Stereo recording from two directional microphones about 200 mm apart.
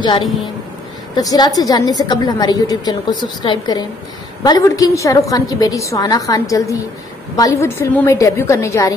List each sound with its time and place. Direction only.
1.1 s a woman's voice: 20° left (ahead or behind)